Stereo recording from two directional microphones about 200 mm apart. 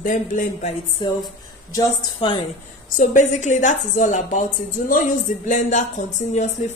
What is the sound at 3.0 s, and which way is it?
Speech, 40° left (ahead or behind).